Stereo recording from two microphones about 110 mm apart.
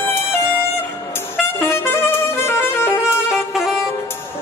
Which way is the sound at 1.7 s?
20° left (ahead or behind).